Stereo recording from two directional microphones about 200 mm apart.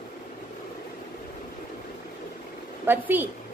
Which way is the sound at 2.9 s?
10° right (ahead or behind).